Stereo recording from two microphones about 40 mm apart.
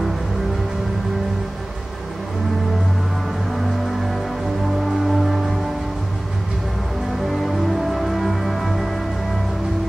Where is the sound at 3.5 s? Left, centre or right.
Centre.